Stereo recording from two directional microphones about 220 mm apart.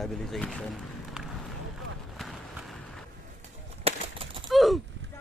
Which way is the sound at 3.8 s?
25° right (ahead or behind).